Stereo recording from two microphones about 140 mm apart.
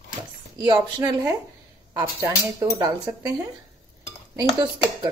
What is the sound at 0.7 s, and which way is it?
Speech, 30° right (ahead or behind).